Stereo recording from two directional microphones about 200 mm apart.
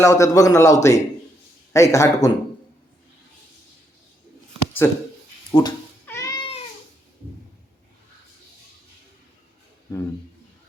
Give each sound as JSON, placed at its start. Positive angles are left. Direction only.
{"t": 0.0, "sound": "a man's voice", "side_deg": 15}
{"t": 4.8, "sound": "a man's voice", "side_deg": 15}
{"t": 5.5, "sound": "cat", "side_deg": 20}
{"t": 9.9, "sound": "a man's voice", "side_deg": 15}